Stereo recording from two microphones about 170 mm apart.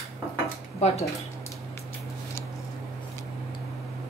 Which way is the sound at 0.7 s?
40° left (ahead or behind).